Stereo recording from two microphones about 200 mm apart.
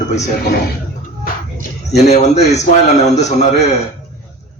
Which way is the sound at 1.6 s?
35° left (ahead or behind).